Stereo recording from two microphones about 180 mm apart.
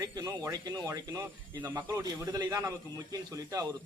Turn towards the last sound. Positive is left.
turn(degrees=-20)  # may be behind; listen again after turning